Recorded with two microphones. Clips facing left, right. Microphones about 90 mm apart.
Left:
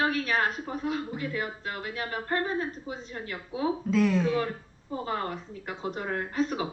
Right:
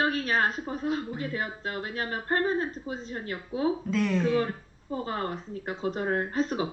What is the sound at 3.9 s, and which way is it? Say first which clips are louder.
Speech: left 4 dB; centre (ahead or behind).